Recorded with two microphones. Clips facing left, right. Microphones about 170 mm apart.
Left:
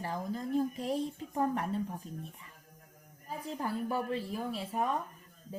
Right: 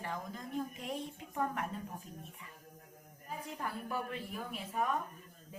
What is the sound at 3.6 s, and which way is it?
Speech, 30° left (ahead or behind).